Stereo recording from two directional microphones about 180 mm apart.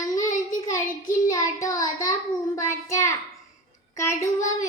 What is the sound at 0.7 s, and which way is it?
Child singing, 20° left (ahead or behind).